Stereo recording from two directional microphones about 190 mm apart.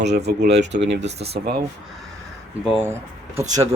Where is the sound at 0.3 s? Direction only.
60° right (ahead or behind).